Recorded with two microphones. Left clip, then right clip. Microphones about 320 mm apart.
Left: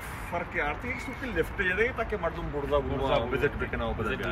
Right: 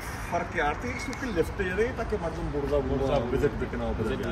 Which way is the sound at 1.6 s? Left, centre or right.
Centre.